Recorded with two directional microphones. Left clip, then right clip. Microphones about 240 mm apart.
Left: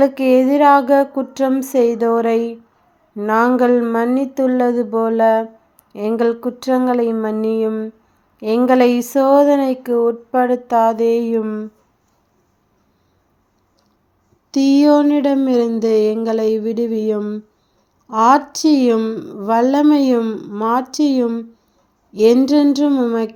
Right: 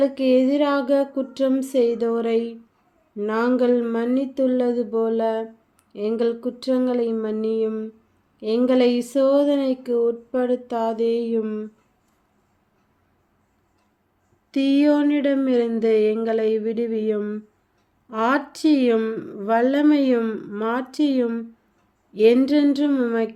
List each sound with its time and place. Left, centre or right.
0.0 s speech: left
14.5 s speech: centre